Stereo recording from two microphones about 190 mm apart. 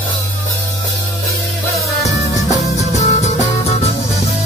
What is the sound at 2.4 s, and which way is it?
Music, 35° left (ahead or behind).